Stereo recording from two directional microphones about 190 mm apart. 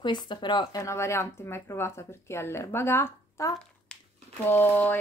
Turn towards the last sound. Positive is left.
turn(degrees=10)  # may be behind; listen again after turning